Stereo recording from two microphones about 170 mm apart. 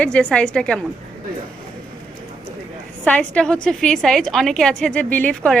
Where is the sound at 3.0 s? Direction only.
10° left (ahead or behind).